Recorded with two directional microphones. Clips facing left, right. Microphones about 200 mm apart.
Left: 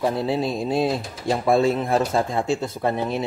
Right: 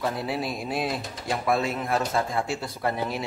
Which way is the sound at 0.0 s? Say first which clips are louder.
Left 6 dB; 25° left (ahead or behind).